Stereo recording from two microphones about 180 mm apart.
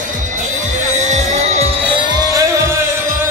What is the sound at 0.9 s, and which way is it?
Music, 40° right (ahead or behind).